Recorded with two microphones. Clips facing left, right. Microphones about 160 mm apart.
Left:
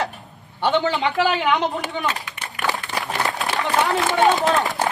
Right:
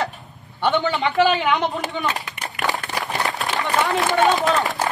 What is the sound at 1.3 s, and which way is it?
Speech, 20° left (ahead or behind).